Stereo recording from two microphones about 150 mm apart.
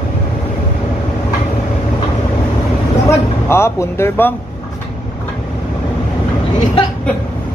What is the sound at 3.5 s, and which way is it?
Speech, 15° left (ahead or behind).